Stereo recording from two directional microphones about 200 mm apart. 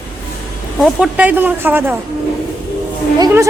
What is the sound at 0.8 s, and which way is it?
A woman's voice, centre (ahead or behind).